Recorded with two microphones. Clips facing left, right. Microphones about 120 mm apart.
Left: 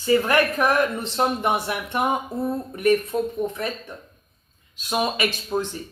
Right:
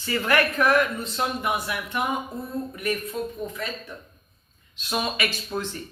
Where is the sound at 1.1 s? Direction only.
30° left (ahead or behind).